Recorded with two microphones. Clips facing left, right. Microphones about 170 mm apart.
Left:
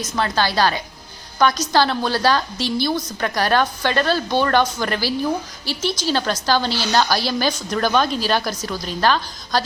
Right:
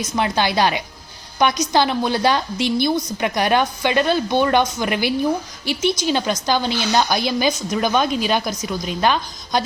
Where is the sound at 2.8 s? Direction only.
15° right (ahead or behind).